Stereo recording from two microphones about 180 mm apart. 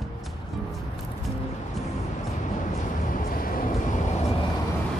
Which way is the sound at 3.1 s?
50° left (ahead or behind).